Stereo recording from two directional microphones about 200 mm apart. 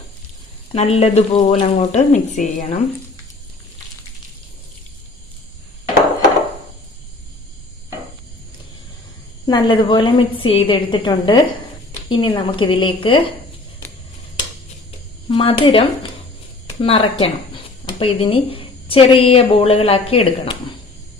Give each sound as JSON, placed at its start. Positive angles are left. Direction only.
{"t": 0.7, "sound": "speech", "side_deg": 30}
{"t": 9.5, "sound": "speech", "side_deg": 25}
{"t": 15.3, "sound": "speech", "side_deg": 25}